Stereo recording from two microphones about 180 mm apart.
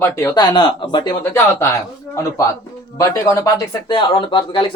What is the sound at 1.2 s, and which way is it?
Speech, 15° left (ahead or behind).